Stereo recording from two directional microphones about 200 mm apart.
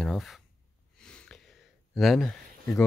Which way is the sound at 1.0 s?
5° left (ahead or behind).